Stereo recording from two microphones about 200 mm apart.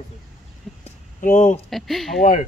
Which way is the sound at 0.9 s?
40° left (ahead or behind).